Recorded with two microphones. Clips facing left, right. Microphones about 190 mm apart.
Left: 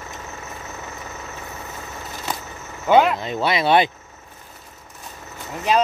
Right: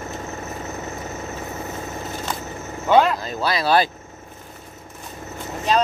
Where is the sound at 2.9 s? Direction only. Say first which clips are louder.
Left 1 dB; 5° left (ahead or behind).